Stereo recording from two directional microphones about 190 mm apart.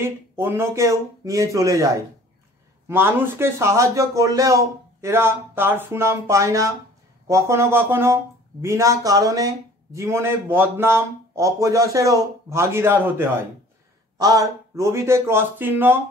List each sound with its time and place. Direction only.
0.0 s a man's voice: 10° right (ahead or behind)